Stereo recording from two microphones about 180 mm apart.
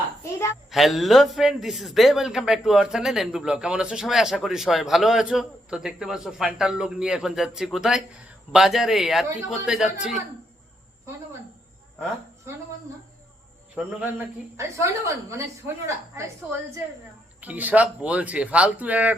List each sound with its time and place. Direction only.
0.2 s a sound: 15° left (ahead or behind)
0.7 s a man's voice: centre (ahead or behind)
14.5 s speech: 15° right (ahead or behind)